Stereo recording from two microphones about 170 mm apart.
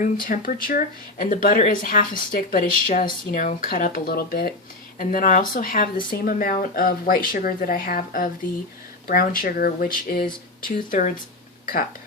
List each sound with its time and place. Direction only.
0.0 s speech: 55° left (ahead or behind)